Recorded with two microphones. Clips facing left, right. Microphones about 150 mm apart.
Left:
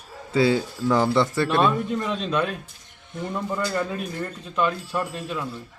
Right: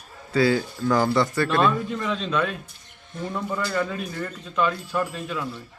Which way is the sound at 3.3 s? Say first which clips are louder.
Even; 10° left (ahead or behind).